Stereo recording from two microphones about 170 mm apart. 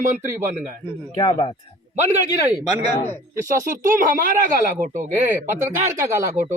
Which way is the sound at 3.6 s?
50° right (ahead or behind).